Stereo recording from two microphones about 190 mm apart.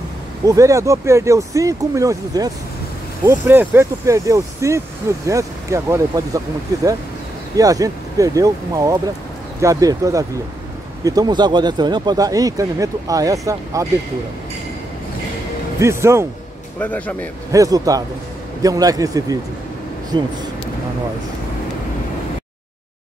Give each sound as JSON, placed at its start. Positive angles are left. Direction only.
{"t": 0.5, "sound": "speech", "side_deg": -15}
{"t": 15.8, "sound": "speech", "side_deg": -15}
{"t": 16.8, "sound": "speech", "side_deg": 10}
{"t": 17.5, "sound": "speech", "side_deg": -20}